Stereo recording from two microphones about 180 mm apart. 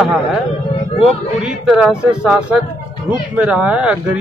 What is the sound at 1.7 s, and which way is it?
Speech, 5° right (ahead or behind).